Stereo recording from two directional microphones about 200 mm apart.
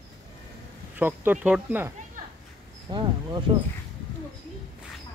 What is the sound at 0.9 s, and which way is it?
Speech, 10° right (ahead or behind).